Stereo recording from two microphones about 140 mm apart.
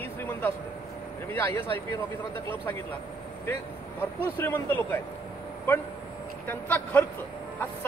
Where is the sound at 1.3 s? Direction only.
15° left (ahead or behind).